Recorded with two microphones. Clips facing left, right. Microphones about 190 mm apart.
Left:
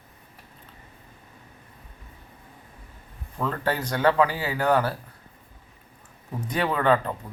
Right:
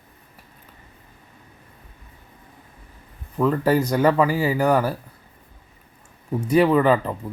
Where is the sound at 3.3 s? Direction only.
5° right (ahead or behind).